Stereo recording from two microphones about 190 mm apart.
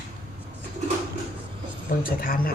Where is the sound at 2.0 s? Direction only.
50° left (ahead or behind).